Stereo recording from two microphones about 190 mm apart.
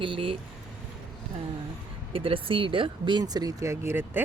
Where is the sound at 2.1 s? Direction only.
30° right (ahead or behind).